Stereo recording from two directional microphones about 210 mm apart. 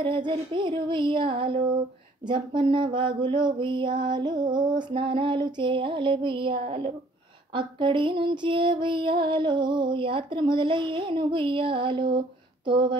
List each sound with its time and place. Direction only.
0.0 s mantra: 25° right (ahead or behind)
12.6 s speech: 25° right (ahead or behind)